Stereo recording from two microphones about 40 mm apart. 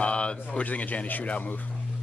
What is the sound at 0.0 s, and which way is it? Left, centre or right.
Speech, left.